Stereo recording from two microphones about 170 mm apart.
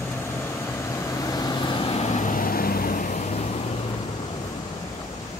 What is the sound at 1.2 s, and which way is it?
Vehicle, 25° left (ahead or behind).